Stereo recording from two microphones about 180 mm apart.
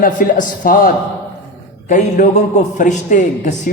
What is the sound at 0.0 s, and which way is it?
A man's voice, 50° left (ahead or behind).